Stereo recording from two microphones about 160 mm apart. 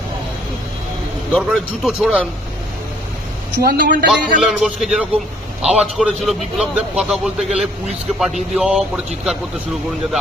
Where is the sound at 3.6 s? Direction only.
65° right (ahead or behind).